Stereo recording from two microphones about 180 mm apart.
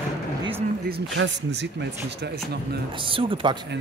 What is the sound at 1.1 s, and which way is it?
Speech, 80° right.